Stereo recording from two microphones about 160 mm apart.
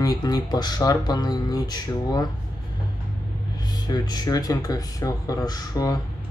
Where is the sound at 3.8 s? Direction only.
25° left (ahead or behind).